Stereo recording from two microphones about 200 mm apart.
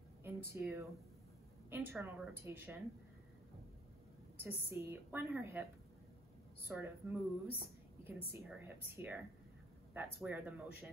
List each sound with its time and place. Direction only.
0.2 s a woman's voice: 10° right (ahead or behind)
4.4 s a woman's voice: 10° right (ahead or behind)
6.7 s a woman's voice: 10° right (ahead or behind)
8.3 s a woman's voice: 10° right (ahead or behind)